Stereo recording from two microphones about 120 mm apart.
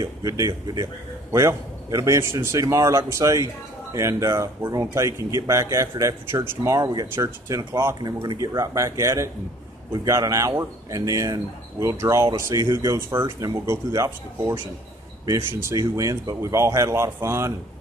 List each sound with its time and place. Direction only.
0.0 s speech: 30° right (ahead or behind)
1.3 s speech: 25° right (ahead or behind)
6.9 s speech: 40° right (ahead or behind)
7.2 s speech: 25° right (ahead or behind)